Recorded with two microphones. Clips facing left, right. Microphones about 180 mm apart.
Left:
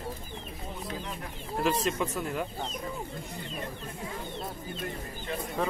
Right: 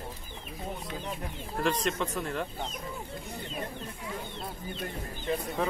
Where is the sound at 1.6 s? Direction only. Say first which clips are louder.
Left 1 dB; 5° left (ahead or behind).